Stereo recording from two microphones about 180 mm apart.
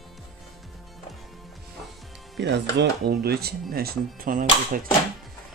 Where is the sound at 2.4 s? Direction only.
70° right (ahead or behind); by 4.9 s 50° right (ahead or behind).